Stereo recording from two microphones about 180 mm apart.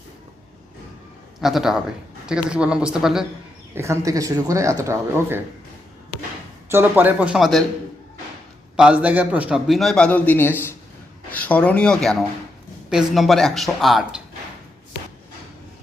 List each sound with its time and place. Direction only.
1.4 s a man's voice: centre (ahead or behind)
3.8 s speech: 15° right (ahead or behind)
6.7 s speech: 10° right (ahead or behind)
8.7 s a man's voice: 5° right (ahead or behind)